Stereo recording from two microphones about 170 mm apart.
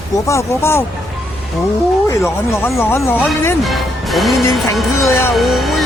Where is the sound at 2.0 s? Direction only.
15° left (ahead or behind).